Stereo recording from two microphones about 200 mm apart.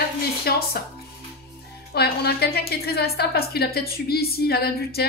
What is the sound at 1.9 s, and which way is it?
A woman's voice, 55° left (ahead or behind).